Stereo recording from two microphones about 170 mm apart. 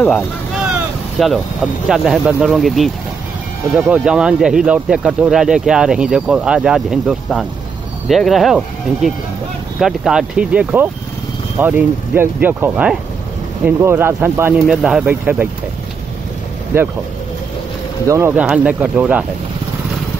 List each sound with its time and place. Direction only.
0.7 s speech: 5° right (ahead or behind)
16.7 s speech: 15° right (ahead or behind)
18.0 s speech: 20° right (ahead or behind)
18.3 s speech: 5° right (ahead or behind)